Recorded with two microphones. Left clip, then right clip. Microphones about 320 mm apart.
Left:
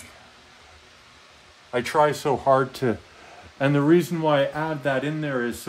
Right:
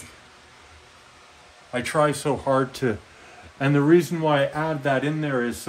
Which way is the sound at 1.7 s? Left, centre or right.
Left.